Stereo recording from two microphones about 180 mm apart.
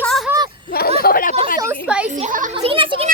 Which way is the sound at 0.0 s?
Centre (ahead or behind).